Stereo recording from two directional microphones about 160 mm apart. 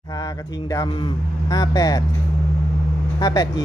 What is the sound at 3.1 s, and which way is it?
Speech, 25° left (ahead or behind).